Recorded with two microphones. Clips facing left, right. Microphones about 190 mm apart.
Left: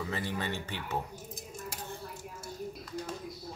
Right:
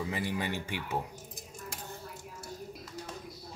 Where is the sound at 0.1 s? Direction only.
15° right (ahead or behind).